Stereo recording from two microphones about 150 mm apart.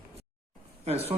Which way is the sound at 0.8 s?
45° right (ahead or behind).